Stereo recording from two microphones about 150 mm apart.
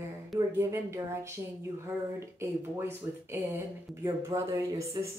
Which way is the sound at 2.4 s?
15° right (ahead or behind).